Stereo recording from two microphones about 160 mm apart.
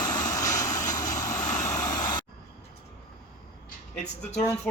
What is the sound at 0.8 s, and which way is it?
Vehicle, 50° left (ahead or behind).